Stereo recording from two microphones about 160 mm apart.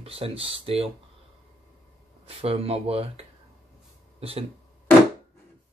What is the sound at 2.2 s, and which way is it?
Speech, 40° right (ahead or behind).